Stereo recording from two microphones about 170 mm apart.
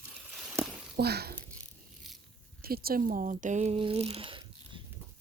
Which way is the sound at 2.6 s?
60° right (ahead or behind).